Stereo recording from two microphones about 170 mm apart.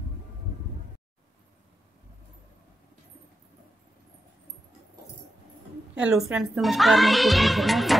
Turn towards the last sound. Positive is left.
turn(degrees=0)  # may be behind; listen again after turning